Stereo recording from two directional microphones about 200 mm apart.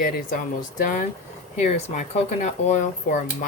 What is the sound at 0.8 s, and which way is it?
Speech, 40° left (ahead or behind).